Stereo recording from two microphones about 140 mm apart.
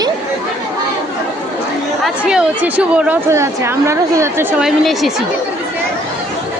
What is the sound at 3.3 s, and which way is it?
A woman's voice, 20° right (ahead or behind).